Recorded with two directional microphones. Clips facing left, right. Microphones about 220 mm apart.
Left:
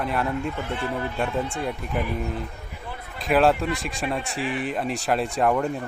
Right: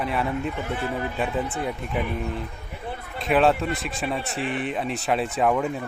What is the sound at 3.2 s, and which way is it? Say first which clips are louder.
Speech: even; centre (ahead or behind).